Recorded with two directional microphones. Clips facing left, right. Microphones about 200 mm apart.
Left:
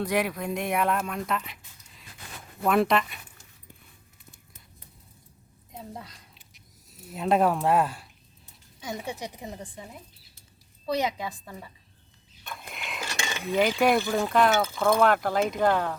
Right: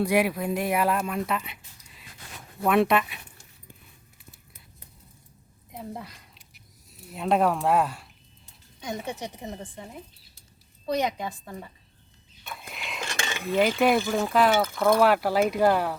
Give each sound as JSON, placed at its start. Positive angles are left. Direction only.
{"t": 0.0, "sound": "speech", "side_deg": -10}
{"t": 2.6, "sound": "speech", "side_deg": 0}
{"t": 5.7, "sound": "a sound", "side_deg": -5}
{"t": 8.8, "sound": "a woman's voice", "side_deg": 5}
{"t": 10.9, "sound": "a woman's voice", "side_deg": 10}
{"t": 12.5, "sound": "cutlery", "side_deg": 0}
{"t": 14.9, "sound": "speech", "side_deg": -5}